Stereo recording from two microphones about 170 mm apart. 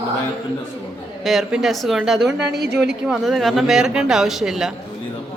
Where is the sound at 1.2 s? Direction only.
Centre (ahead or behind).